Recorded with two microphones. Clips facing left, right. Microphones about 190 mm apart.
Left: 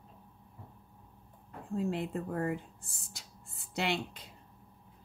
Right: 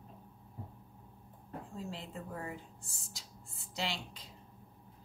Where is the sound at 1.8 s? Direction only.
60° left (ahead or behind).